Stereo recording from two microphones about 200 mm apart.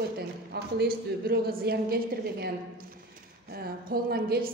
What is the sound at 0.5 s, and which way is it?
A woman's voice, 55° right (ahead or behind).